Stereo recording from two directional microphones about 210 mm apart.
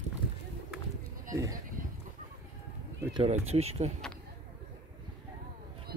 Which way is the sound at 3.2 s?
30° right (ahead or behind).